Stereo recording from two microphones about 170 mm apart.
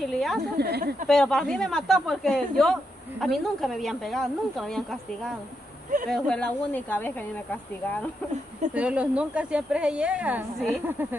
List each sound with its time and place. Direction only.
0.0 s speech: centre (ahead or behind)
0.6 s speech: 70° right (ahead or behind)
1.0 s speech: 5° left (ahead or behind)
8.7 s speech: 5° right (ahead or behind)